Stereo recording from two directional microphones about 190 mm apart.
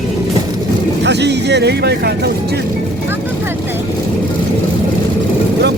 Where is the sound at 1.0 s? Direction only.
65° right (ahead or behind).